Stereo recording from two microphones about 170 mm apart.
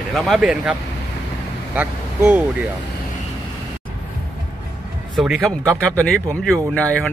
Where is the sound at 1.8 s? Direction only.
10° right (ahead or behind).